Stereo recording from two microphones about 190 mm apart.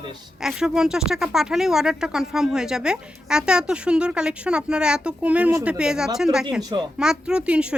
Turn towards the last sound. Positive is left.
turn(degrees=-5)  # may be behind; listen again after turning